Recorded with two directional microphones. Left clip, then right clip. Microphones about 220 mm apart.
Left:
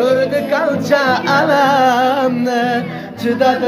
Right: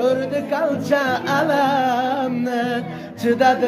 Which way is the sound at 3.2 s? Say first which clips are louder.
Left 2 dB; 35° right (ahead or behind).